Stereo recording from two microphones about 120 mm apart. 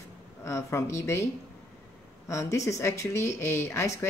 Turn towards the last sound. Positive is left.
turn(degrees=25)  # may be behind; listen again after turning